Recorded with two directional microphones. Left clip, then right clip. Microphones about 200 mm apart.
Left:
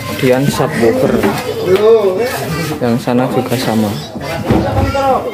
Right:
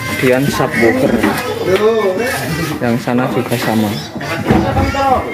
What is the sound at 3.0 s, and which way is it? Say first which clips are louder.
Speech: left 2 dB; centre (ahead or behind).